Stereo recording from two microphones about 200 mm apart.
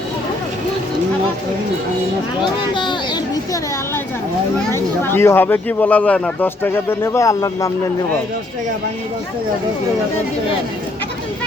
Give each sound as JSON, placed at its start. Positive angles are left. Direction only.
{"t": 2.7, "sound": "children playing", "side_deg": 25}
{"t": 4.7, "sound": "speech", "side_deg": 10}